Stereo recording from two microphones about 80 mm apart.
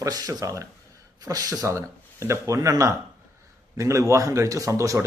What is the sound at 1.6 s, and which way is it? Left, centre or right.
Speech, right.